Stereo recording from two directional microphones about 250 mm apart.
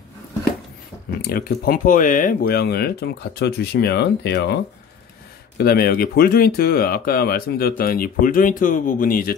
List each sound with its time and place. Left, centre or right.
1.2 s speech: left
5.6 s speech: left